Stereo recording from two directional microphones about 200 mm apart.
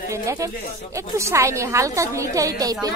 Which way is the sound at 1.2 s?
15° right (ahead or behind).